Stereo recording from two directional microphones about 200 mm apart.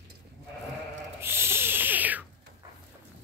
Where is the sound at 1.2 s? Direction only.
10° right (ahead or behind).